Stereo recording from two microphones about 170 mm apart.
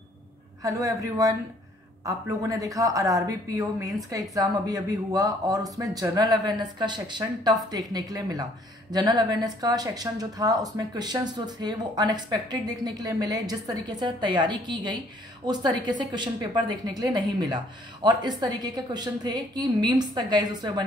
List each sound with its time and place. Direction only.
0.6 s speech: 20° right (ahead or behind)